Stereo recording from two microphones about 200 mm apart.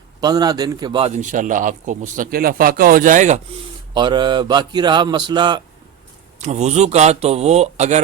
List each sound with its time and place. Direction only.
0.2 s a man's voice: 20° right (ahead or behind); by 3.4 s 35° right (ahead or behind)
3.9 s mantra: 20° right (ahead or behind)
6.4 s a man's voice: 35° right (ahead or behind)